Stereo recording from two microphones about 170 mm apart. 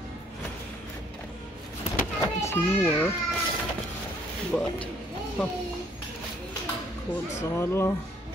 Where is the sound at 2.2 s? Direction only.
15° left (ahead or behind).